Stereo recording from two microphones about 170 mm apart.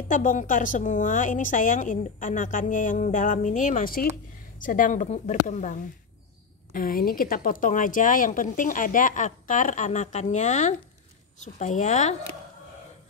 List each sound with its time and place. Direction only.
0.1 s a woman's voice: 50° left (ahead or behind)